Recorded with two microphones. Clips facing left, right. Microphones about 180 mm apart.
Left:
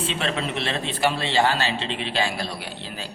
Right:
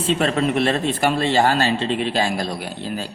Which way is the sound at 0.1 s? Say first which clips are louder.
Right 8 dB; 45° right (ahead or behind).